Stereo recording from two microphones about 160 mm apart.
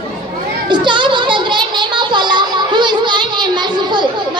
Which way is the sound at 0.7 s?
30° right (ahead or behind).